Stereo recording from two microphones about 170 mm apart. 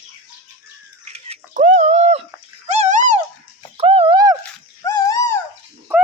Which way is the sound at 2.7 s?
45° right (ahead or behind).